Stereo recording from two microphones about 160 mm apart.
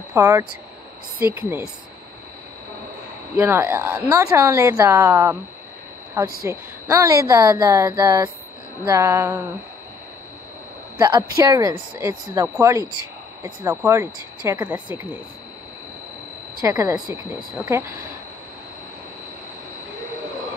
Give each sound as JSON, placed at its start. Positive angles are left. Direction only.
{"t": 0.1, "sound": "a woman's voice", "side_deg": -15}
{"t": 3.3, "sound": "a woman's voice", "side_deg": -10}
{"t": 11.0, "sound": "a woman's voice", "side_deg": -25}
{"t": 16.6, "sound": "a woman's voice", "side_deg": -20}